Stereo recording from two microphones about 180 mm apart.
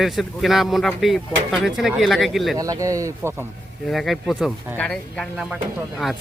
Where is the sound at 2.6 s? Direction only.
20° right (ahead or behind).